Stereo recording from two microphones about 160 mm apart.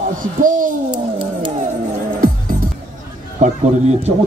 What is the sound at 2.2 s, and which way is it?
Music, 60° right (ahead or behind).